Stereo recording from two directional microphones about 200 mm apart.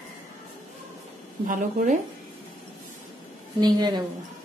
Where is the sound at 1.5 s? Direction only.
40° right (ahead or behind).